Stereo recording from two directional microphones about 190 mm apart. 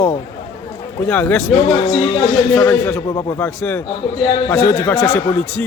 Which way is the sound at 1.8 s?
25° left (ahead or behind).